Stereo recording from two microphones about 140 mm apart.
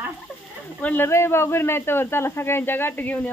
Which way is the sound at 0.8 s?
15° left (ahead or behind).